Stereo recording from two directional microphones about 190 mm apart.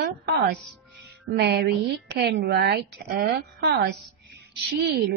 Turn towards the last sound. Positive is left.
turn(degrees=-60)  # may be behind; listen again after turning